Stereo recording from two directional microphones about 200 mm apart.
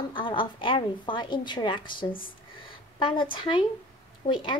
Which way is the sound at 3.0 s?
25° left (ahead or behind).